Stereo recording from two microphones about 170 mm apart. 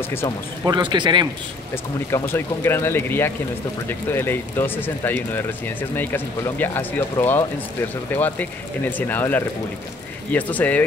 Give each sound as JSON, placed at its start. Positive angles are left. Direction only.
{"t": 0.7, "sound": "speech", "side_deg": -25}
{"t": 2.0, "sound": "speech", "side_deg": 15}